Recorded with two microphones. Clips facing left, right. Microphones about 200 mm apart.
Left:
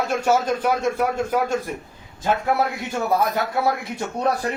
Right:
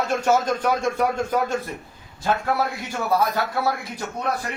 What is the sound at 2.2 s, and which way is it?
A man's voice, 20° left (ahead or behind).